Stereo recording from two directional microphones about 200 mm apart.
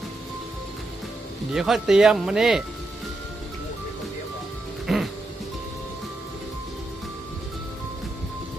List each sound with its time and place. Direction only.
1.5 s speech: centre (ahead or behind)
4.9 s music: centre (ahead or behind)